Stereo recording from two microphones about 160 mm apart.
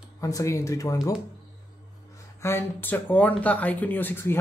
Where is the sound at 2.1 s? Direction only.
15° left (ahead or behind).